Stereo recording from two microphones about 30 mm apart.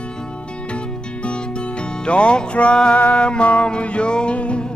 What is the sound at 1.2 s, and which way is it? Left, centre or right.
Music, left.